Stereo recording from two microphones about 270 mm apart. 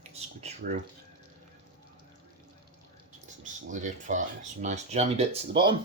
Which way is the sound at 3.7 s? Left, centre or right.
Right.